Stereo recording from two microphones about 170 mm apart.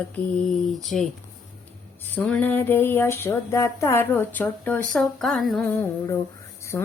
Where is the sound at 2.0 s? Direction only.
10° left (ahead or behind).